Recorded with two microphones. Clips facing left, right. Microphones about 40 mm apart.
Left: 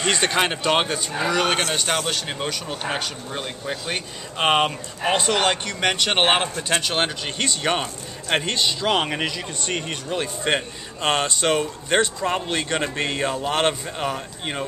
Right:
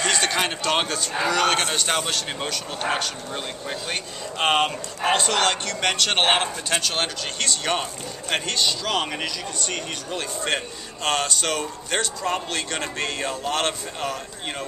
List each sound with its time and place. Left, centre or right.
0.0 s speech: left